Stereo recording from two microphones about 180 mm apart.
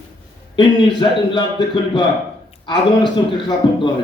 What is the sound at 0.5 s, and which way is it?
Speech, 25° left (ahead or behind).